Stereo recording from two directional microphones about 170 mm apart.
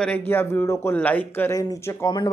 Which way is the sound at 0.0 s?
10° left (ahead or behind).